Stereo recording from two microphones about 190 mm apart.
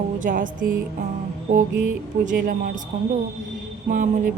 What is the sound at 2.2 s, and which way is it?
Speech, 45° right (ahead or behind).